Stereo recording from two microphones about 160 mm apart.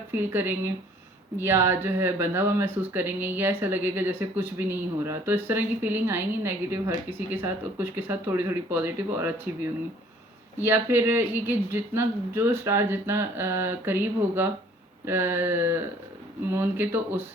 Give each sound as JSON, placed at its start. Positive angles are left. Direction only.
{"t": 0.2, "sound": "speech", "side_deg": -15}
{"t": 10.6, "sound": "speech", "side_deg": -15}